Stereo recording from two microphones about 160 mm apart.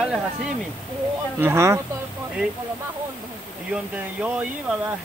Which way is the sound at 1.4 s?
15° right (ahead or behind).